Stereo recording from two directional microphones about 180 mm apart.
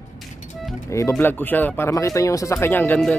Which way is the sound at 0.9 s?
15° left (ahead or behind).